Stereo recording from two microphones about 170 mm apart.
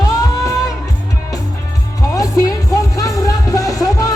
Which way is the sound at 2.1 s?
20° left (ahead or behind).